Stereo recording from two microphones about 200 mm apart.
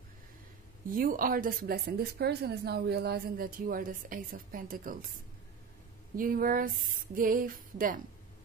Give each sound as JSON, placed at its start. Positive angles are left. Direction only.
{"t": 0.8, "sound": "speech", "side_deg": -45}
{"t": 6.1, "sound": "speech", "side_deg": -45}